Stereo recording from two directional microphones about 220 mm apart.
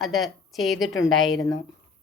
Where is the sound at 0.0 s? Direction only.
Centre (ahead or behind).